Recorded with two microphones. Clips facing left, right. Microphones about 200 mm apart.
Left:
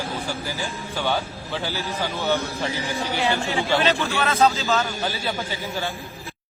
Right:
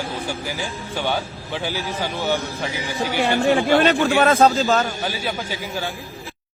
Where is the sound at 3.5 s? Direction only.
55° right (ahead or behind).